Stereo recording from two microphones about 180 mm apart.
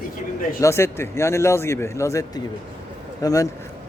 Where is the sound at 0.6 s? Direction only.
15° left (ahead or behind).